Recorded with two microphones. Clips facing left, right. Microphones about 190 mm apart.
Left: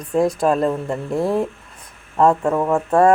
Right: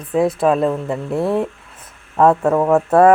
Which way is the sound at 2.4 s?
20° right (ahead or behind).